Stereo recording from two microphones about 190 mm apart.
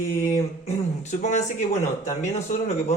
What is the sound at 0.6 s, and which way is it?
Speech, 40° left (ahead or behind).